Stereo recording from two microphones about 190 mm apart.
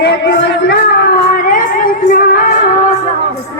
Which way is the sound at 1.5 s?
45° left (ahead or behind).